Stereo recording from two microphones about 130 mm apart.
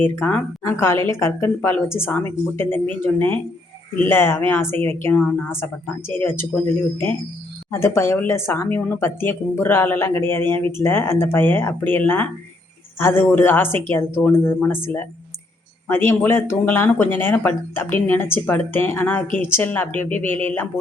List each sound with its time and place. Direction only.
0.0 s a woman's voice: 15° left (ahead or behind)
7.7 s speech: 20° left (ahead or behind)